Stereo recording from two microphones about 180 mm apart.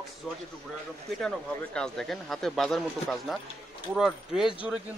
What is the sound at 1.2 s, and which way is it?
Speech, 5° left (ahead or behind).